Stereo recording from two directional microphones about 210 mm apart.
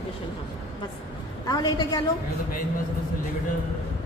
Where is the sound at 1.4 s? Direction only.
20° left (ahead or behind).